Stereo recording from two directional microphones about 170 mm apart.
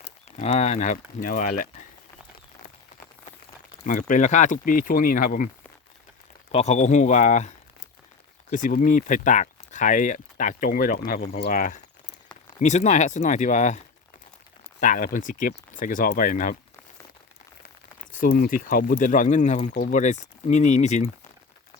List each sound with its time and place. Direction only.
0.0 s speech: 40° left (ahead or behind)
3.8 s speech: 50° left (ahead or behind)
6.5 s speech: 40° left (ahead or behind); by 11.3 s 60° left (ahead or behind)
11.3 s speech: 45° left (ahead or behind)
18.1 s speech: 55° left (ahead or behind)